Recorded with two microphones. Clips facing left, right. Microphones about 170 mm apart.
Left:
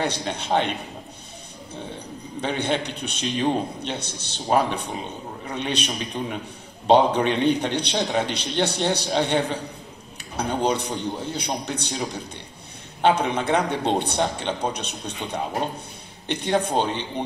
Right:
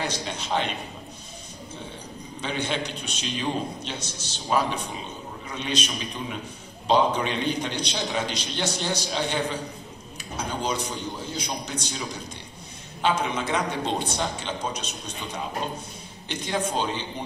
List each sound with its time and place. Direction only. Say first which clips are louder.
0.0 s a man's voice: left 4 dB; 60° left (ahead or behind)
2.4 s a man's voice: left 4 dB; 60° left (ahead or behind)
13.0 s a man's voice: left 5 dB; 65° left (ahead or behind)